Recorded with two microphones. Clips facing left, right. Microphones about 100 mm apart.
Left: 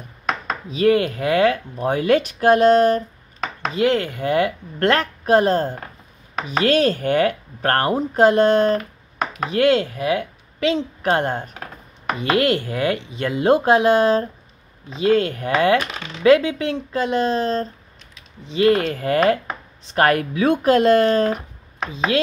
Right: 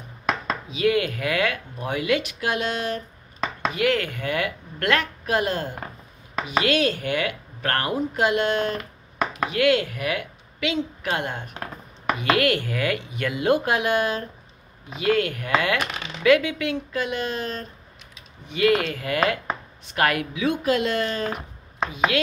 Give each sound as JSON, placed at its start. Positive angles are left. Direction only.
{"t": 0.7, "sound": "speech", "side_deg": 40}
{"t": 3.7, "sound": "a woman's voice", "side_deg": 30}
{"t": 12.2, "sound": "speech", "side_deg": 30}
{"t": 21.9, "sound": "chopping", "side_deg": 30}